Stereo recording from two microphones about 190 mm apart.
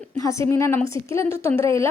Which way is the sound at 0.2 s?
15° left (ahead or behind).